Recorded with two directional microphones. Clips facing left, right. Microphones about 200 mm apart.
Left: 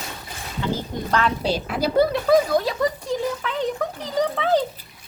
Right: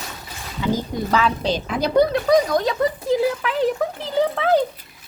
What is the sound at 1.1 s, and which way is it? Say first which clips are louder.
Speech: right 1 dB; 5° right (ahead or behind).